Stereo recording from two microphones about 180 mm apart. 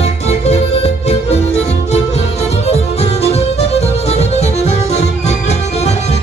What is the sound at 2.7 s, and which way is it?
Music, 35° left (ahead or behind).